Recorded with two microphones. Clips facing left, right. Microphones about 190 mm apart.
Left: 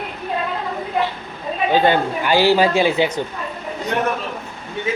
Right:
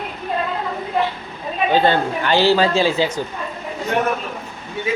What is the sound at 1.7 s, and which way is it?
A man's voice, 15° left (ahead or behind).